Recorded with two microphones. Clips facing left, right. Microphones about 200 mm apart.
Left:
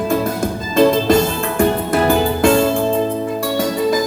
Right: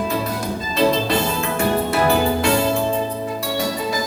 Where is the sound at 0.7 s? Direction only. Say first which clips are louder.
Left 6 dB; 50° left (ahead or behind).